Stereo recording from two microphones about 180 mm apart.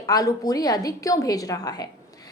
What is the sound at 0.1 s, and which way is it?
A woman's voice, 20° left (ahead or behind).